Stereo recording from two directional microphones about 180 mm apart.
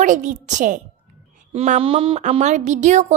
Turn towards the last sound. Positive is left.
turn(degrees=-40)  # may be behind; listen again after turning